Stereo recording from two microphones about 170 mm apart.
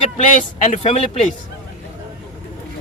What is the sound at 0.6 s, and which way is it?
Speech, 40° left (ahead or behind).